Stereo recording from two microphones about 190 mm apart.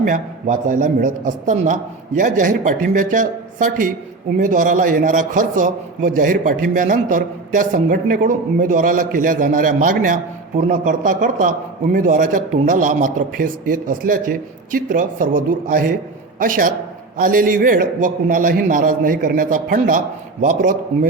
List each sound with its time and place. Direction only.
0.0 s a man's voice: 45° right (ahead or behind)